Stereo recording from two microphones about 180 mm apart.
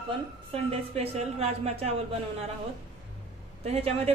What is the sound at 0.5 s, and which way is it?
A woman's voice, 35° right (ahead or behind).